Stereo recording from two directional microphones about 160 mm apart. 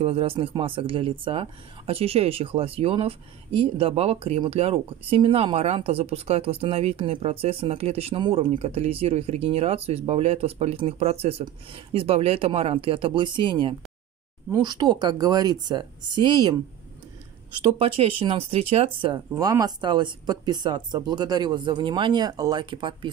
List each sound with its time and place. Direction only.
0.0 s speech: 40° right (ahead or behind)
17.7 s speech: 35° right (ahead or behind)